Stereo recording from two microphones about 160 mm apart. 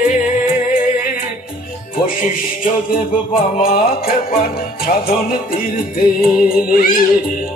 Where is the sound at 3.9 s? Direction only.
70° left (ahead or behind).